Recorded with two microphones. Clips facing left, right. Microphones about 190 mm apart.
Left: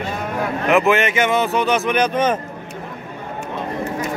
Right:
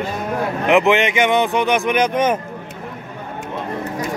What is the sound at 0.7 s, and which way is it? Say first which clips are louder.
Speech: right 1 dB; 20° right (ahead or behind).